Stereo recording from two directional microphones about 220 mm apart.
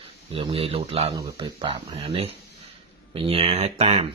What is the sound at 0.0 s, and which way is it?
Speech, 25° right (ahead or behind).